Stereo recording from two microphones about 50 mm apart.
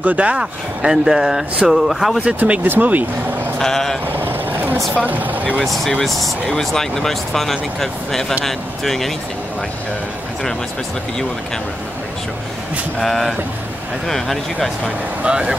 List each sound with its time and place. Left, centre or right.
0.0 s speech: right
0.4 s speech: centre
2.2 s speech: right
2.6 s speech: right
3.5 s speech: centre
4.1 s boat: right
5.0 s speech: right
5.6 s speech: centre
13.0 s speech: centre
15.2 s speech: centre